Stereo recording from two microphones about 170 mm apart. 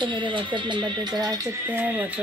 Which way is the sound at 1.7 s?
10° right (ahead or behind).